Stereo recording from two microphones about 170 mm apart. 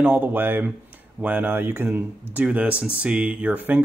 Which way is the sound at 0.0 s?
10° right (ahead or behind).